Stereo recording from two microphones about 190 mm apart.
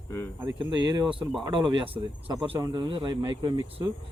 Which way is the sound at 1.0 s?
Centre (ahead or behind).